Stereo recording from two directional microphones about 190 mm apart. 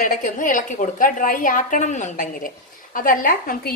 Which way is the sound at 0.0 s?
45° left (ahead or behind).